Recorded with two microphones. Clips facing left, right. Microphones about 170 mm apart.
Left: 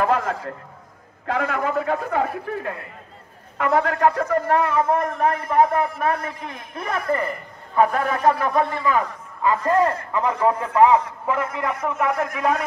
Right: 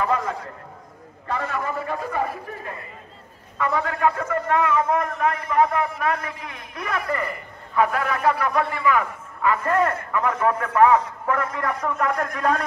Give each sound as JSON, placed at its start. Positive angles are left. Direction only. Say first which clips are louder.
{"t": 0.0, "sound": "a man's voice", "louder": "left 3 dB", "side_deg": 65}
{"t": 1.2, "sound": "a man's voice", "louder": "left 4 dB", "side_deg": 85}
{"t": 3.9, "sound": "a man's voice", "louder": "left 3 dB", "side_deg": 40}
{"t": 9.5, "sound": "a man's voice", "louder": "left 2 dB", "side_deg": 25}